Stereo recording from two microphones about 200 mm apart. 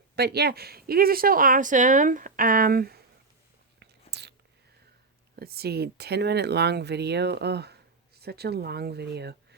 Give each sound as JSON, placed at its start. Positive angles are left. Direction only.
{"t": 0.2, "sound": "speech", "side_deg": -55}
{"t": 3.8, "sound": "chewing", "side_deg": -55}
{"t": 5.4, "sound": "speech", "side_deg": -50}